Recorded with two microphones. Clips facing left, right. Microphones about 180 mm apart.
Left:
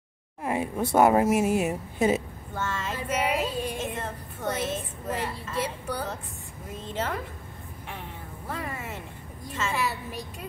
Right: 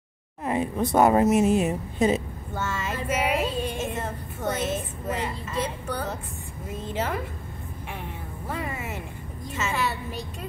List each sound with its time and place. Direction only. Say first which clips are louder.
0.4 s speech: right 2 dB; 10° left (ahead or behind)
2.5 s child singing: right 1 dB; 5° right (ahead or behind)
4.6 s a sound: right 2 dB; 10° right (ahead or behind)
5.6 s music: right 1 dB; 5° left (ahead or behind)
6.9 s a woman's voice: right 2 dB; 10° right (ahead or behind)
8.5 s a woman's voice: right 2 dB; 10° right (ahead or behind)